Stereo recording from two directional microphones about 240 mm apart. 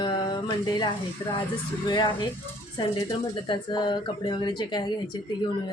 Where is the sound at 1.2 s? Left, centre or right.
Centre.